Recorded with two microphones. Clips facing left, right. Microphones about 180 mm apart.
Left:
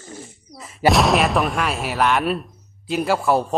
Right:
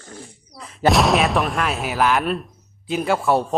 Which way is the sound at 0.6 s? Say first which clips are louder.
Even; 5° left (ahead or behind).